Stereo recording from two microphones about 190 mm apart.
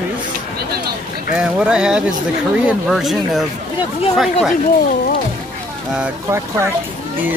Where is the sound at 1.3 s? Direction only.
5° right (ahead or behind).